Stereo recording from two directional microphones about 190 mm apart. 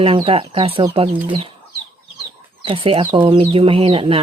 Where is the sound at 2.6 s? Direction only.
30° right (ahead or behind).